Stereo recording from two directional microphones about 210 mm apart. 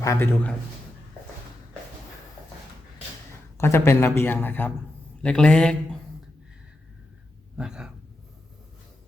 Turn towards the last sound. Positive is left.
turn(degrees=-5)  # may be behind; listen again after turning